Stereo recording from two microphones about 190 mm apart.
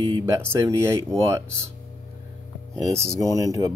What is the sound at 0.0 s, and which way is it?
Speech, 20° right (ahead or behind).